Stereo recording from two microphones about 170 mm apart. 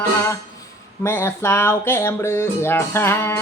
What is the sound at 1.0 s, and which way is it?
Music, 15° left (ahead or behind).